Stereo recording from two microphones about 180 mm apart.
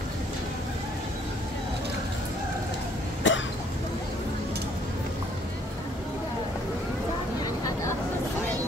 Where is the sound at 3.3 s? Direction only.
90° left.